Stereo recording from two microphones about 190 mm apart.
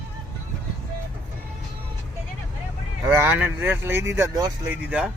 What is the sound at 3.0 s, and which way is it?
Speech, 10° right (ahead or behind).